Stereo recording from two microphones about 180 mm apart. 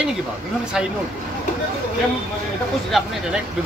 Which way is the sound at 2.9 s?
Centre (ahead or behind).